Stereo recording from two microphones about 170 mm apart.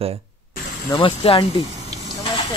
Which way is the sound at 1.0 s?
30° left (ahead or behind).